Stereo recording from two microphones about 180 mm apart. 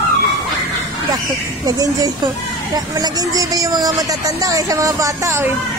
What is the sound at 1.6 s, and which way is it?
Speech, 20° right (ahead or behind).